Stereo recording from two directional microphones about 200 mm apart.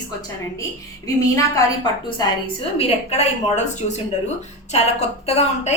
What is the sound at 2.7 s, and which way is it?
Speech, 30° left (ahead or behind).